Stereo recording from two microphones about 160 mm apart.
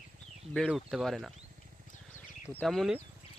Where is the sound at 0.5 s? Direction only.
Centre (ahead or behind).